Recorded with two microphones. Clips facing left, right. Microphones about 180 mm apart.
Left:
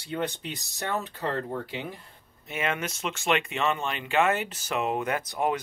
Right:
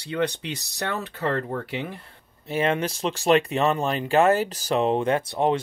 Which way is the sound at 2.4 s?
35° right (ahead or behind).